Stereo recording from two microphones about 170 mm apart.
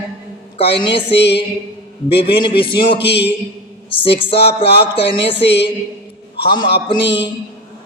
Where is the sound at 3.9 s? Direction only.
30° left (ahead or behind).